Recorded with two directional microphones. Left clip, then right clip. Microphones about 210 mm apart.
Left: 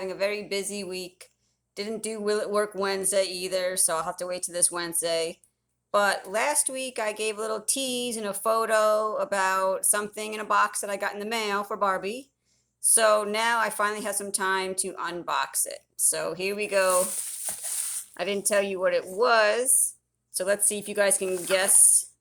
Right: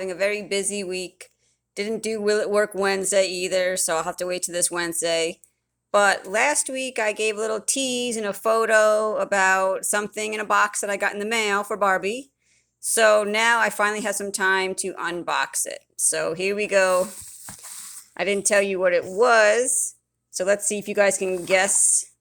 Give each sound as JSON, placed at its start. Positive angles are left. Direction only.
{"t": 0.0, "sound": "speech", "side_deg": -25}
{"t": 18.2, "sound": "a woman's voice", "side_deg": -25}